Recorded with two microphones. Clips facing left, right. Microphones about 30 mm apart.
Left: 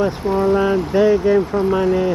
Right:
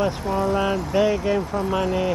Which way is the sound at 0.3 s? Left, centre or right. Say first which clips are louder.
Left 8 dB; centre.